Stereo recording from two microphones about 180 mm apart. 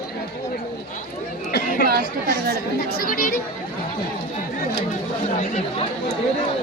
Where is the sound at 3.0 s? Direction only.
50° left (ahead or behind).